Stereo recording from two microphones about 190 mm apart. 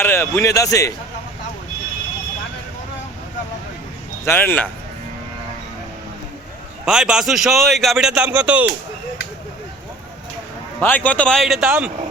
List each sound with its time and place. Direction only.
0.0 s speech: 15° left (ahead or behind)
4.3 s speech: 10° left (ahead or behind)
6.8 s a man's voice: 5° right (ahead or behind)
10.8 s a man's voice: 10° left (ahead or behind)